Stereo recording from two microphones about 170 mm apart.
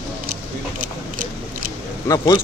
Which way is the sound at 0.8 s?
50° right (ahead or behind).